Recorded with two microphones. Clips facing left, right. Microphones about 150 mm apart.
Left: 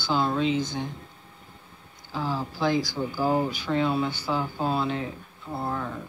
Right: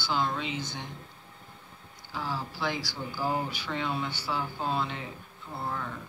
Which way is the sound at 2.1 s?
15° left (ahead or behind).